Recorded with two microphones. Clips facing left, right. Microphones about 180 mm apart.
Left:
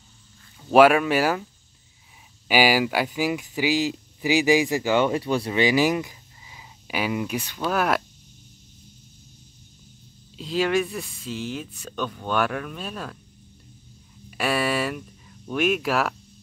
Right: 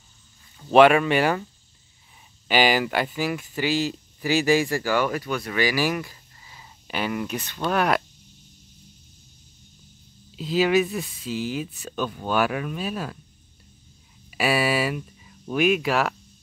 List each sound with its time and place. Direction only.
0.7 s speech: 5° left (ahead or behind)
10.3 s speech: 5° right (ahead or behind)
14.3 s speech: 5° right (ahead or behind)